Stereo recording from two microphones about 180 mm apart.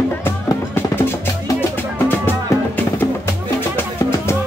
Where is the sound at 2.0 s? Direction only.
10° left (ahead or behind).